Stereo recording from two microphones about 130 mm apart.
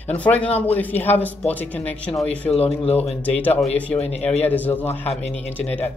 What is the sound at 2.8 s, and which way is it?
Speech, 50° left (ahead or behind).